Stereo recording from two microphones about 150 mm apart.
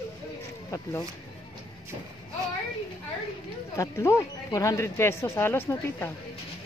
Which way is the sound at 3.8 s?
20° left (ahead or behind).